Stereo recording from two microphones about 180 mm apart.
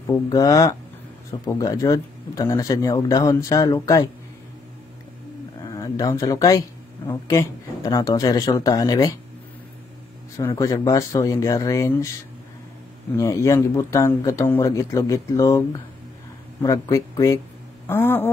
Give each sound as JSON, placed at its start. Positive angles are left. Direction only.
{"t": 0.0, "sound": "speech", "side_deg": 20}
{"t": 5.6, "sound": "speech", "side_deg": 20}
{"t": 10.5, "sound": "speech", "side_deg": 20}
{"t": 13.1, "sound": "speech", "side_deg": 15}